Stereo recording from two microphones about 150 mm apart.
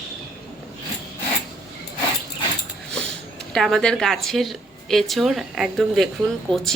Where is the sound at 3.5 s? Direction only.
Centre (ahead or behind).